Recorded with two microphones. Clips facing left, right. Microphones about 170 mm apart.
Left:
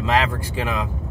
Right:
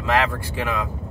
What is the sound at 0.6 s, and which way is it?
Speech, 20° left (ahead or behind).